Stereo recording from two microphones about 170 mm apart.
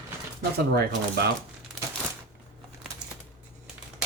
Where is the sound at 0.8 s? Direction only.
70° right (ahead or behind).